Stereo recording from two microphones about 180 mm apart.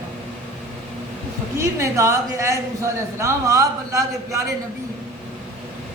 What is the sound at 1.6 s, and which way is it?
A woman's voice, 15° right (ahead or behind).